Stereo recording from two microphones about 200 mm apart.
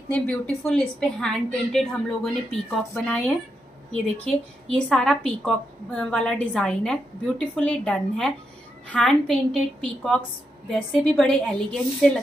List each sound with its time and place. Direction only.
0.7 s a woman's voice: 5° left (ahead or behind)